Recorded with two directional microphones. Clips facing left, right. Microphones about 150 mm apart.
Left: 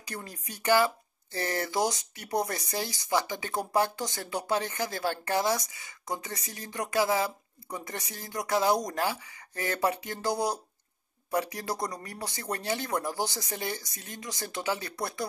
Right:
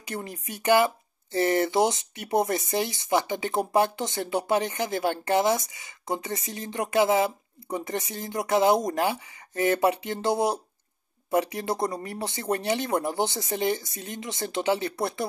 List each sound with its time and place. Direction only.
0.0 s speech: 20° right (ahead or behind)